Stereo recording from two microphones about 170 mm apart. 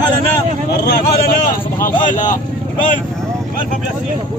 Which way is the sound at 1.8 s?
50° left (ahead or behind).